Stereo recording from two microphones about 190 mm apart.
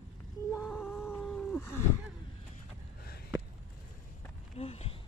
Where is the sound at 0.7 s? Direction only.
10° left (ahead or behind).